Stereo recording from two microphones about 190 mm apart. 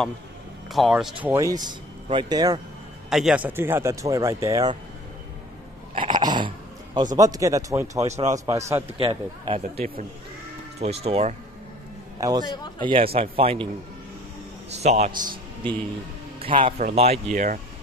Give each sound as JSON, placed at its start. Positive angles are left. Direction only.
{"t": 0.7, "sound": "speech", "side_deg": 0}
{"t": 1.3, "sound": "speech", "side_deg": -20}
{"t": 3.1, "sound": "speech", "side_deg": 0}
{"t": 5.9, "sound": "dog", "side_deg": -25}
{"t": 7.2, "sound": "speech", "side_deg": -20}
{"t": 9.0, "sound": "speech", "side_deg": -25}
{"t": 10.8, "sound": "speech", "side_deg": -30}
{"t": 12.2, "sound": "a man's voice", "side_deg": -20}
{"t": 12.4, "sound": "a man's voice", "side_deg": 20}
{"t": 12.8, "sound": "speech", "side_deg": -30}
{"t": 14.8, "sound": "a man's voice", "side_deg": -35}